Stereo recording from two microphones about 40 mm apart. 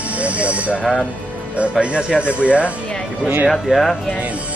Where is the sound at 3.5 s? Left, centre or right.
Centre.